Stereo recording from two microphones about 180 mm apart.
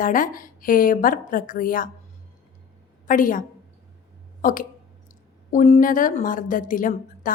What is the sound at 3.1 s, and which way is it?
A woman's voice, 50° left (ahead or behind).